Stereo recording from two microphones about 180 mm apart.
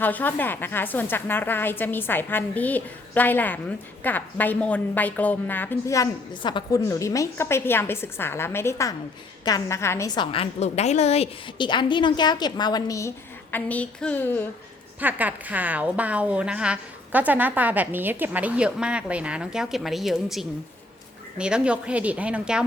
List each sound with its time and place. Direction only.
0.0 s a woman's voice: 10° left (ahead or behind)
15.0 s a woman's voice: 10° right (ahead or behind)